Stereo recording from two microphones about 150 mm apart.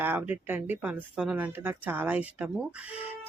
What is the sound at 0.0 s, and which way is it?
A woman's voice, 15° right (ahead or behind).